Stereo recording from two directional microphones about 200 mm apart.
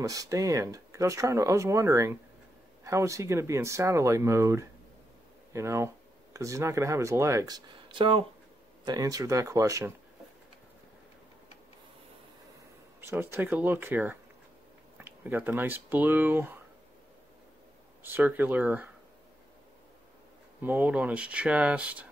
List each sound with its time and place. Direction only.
0.0 s speech: 15° right (ahead or behind)
13.0 s speech: 10° right (ahead or behind)
18.0 s speech: 10° right (ahead or behind)
20.6 s speech: 10° right (ahead or behind)